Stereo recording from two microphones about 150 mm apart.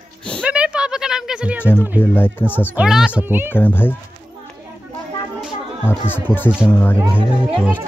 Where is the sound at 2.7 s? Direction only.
5° right (ahead or behind).